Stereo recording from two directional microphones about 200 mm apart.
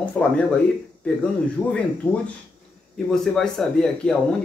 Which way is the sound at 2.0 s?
5° left (ahead or behind).